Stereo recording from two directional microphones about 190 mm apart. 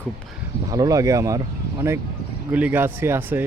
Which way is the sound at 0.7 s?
20° right (ahead or behind).